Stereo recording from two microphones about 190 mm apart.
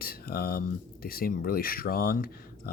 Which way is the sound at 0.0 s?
55° left (ahead or behind).